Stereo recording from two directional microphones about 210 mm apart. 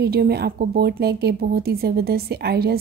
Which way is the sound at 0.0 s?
50° right (ahead or behind).